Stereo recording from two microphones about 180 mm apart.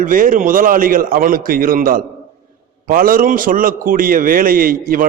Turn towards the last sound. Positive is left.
turn(degrees=-50)  # may be behind; listen again after turning